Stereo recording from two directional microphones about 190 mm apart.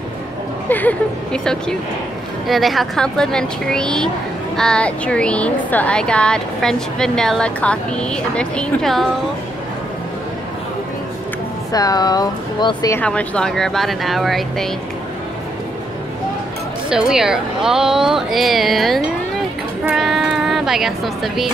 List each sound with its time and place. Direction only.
0.7 s a woman's voice: 10° left (ahead or behind)
11.7 s speech: 20° left (ahead or behind)
13.0 s a woman's voice: 5° left (ahead or behind)
17.1 s a woman's voice: 5° right (ahead or behind)